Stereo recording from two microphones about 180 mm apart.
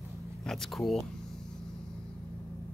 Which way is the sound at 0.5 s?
Centre (ahead or behind).